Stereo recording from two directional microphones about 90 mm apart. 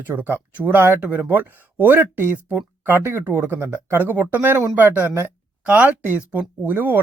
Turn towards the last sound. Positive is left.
turn(degrees=-20)  # may be behind; listen again after turning